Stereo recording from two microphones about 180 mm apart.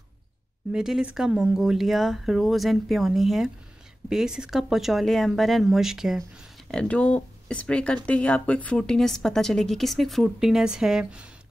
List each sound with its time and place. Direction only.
0.7 s speech: 5° right (ahead or behind)